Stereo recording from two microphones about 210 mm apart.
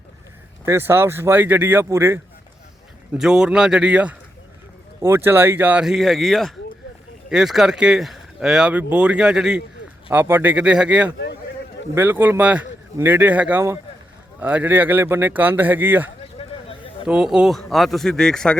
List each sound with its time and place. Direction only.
0.6 s speech: 10° right (ahead or behind)
16.4 s a sound: 25° left (ahead or behind)
17.1 s speech: 5° right (ahead or behind)